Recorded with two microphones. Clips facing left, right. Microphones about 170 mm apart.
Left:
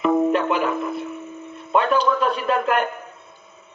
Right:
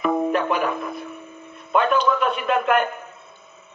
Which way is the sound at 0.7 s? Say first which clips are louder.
Left 4 dB; 25° left (ahead or behind).